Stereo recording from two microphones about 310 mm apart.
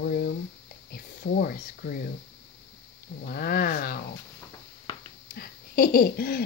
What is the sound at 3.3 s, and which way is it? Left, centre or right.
Speech, left.